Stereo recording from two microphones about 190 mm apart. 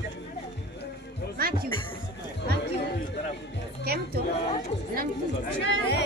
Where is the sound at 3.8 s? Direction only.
55° right (ahead or behind).